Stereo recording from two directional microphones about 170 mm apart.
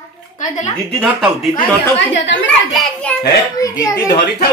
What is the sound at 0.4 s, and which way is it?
Speech, 45° left (ahead or behind).